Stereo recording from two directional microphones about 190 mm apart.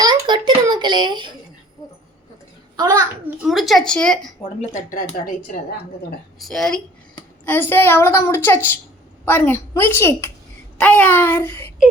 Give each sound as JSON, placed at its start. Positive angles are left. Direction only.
{"t": 0.0, "sound": "a sound", "side_deg": -25}
{"t": 2.7, "sound": "a child's voice", "side_deg": -20}
{"t": 3.4, "sound": "a woman's voice", "side_deg": 0}
{"t": 4.6, "sound": "speech", "side_deg": 40}
{"t": 6.4, "sound": "a woman's voice", "side_deg": 0}